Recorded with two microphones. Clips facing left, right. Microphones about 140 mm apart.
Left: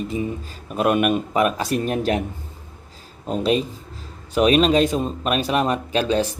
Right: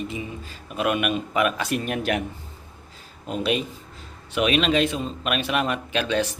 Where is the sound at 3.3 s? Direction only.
35° left (ahead or behind).